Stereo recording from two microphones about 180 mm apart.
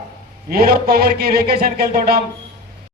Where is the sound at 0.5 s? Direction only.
60° right (ahead or behind).